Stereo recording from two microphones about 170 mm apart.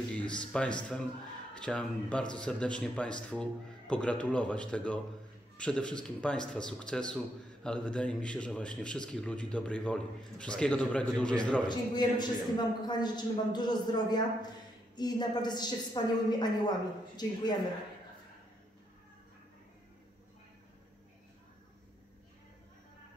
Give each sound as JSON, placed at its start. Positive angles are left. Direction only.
{"t": 0.1, "sound": "speech", "side_deg": 5}
{"t": 11.9, "sound": "a man's voice", "side_deg": 25}